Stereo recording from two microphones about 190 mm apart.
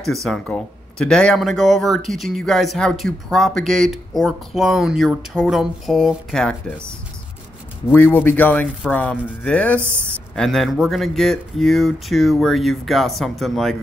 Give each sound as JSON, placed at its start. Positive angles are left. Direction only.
{"t": 0.0, "sound": "speech", "side_deg": 0}
{"t": 7.9, "sound": "a man's voice", "side_deg": 10}